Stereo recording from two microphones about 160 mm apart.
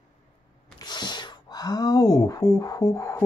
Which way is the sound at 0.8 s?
25° left (ahead or behind).